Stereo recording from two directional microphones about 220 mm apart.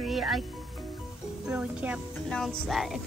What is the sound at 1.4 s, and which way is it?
Speech, 5° right (ahead or behind).